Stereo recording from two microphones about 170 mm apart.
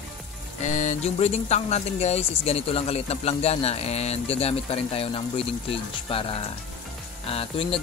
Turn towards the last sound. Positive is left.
turn(degrees=35)  # may be behind; listen again after turning